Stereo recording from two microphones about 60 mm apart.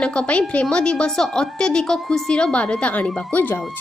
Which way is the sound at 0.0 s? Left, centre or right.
Centre.